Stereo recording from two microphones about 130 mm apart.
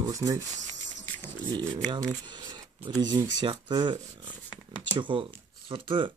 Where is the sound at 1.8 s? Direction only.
35° right (ahead or behind).